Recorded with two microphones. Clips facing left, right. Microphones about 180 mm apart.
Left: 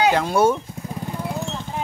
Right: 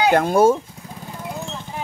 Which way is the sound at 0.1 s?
50° right (ahead or behind).